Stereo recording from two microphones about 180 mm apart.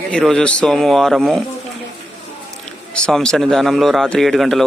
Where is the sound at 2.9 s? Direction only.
5° left (ahead or behind).